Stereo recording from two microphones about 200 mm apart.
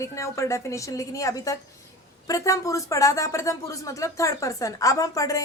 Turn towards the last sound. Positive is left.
turn(degrees=15)  # may be behind; listen again after turning